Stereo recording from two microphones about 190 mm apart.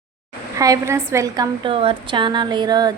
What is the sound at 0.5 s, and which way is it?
A woman's voice, 15° right (ahead or behind).